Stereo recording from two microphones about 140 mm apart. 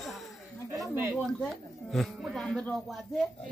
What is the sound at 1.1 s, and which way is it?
A man's voice, centre (ahead or behind).